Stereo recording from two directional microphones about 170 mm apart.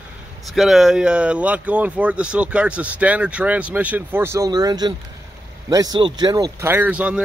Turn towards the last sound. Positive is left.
turn(degrees=-5)  # may be behind; listen again after turning